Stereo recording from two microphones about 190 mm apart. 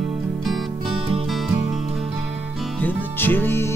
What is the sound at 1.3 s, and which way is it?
Music, centre (ahead or behind).